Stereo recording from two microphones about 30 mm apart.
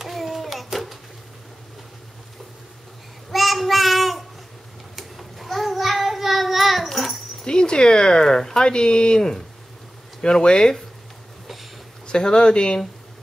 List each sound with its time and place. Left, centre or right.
0.0 s a sound: centre
3.3 s child singing: centre
7.4 s speech: left
8.2 s speech: centre
8.5 s speech: left
10.2 s speech: left
12.1 s speech: left